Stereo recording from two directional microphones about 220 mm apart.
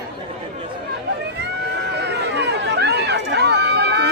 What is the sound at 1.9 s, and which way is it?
Run, 50° right (ahead or behind).